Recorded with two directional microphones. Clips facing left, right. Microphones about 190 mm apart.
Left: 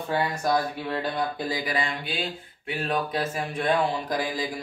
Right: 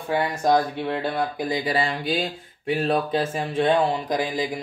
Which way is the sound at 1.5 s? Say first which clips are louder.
Right 4 dB; 30° right (ahead or behind).